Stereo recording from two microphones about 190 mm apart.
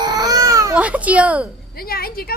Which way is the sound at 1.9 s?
50° left (ahead or behind).